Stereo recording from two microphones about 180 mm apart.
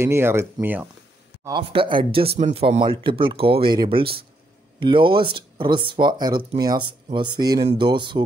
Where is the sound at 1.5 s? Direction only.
25° right (ahead or behind).